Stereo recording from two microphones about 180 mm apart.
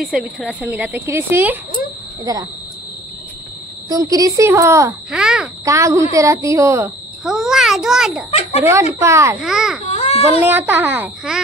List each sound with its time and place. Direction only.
0.0 s speech: centre (ahead or behind); by 2.4 s 20° right (ahead or behind)
3.9 s speech: 20° right (ahead or behind)
5.1 s a child's voice: 5° right (ahead or behind)
5.7 s speech: 15° right (ahead or behind)
7.2 s a child's voice: centre (ahead or behind)
8.3 s a sound: 35° left (ahead or behind)
9.0 s speech: 15° right (ahead or behind)
9.4 s a child's voice: centre (ahead or behind)
9.8 s baby cry: 35° left (ahead or behind)
10.4 s speech: 10° right (ahead or behind)